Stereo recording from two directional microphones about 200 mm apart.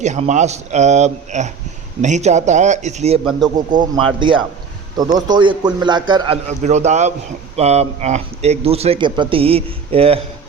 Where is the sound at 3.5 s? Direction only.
20° right (ahead or behind).